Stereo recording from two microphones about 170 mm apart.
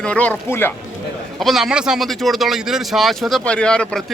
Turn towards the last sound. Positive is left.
turn(degrees=5)  # may be behind; listen again after turning